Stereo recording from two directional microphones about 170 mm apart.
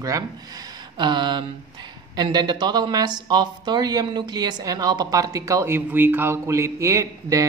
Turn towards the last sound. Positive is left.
turn(degrees=-20)  # may be behind; listen again after turning